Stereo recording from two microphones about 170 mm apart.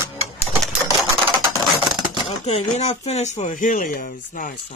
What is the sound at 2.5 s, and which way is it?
Speech, 40° left (ahead or behind).